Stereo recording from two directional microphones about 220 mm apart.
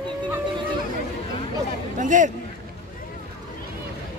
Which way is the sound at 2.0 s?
35° right (ahead or behind).